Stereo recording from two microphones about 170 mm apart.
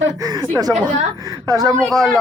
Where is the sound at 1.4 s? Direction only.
20° right (ahead or behind).